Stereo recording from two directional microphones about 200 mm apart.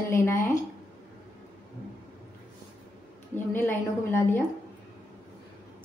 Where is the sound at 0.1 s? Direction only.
10° left (ahead or behind).